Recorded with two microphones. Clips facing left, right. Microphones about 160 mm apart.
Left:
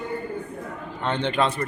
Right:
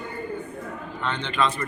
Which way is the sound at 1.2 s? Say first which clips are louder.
Left 2 dB; 60° left (ahead or behind).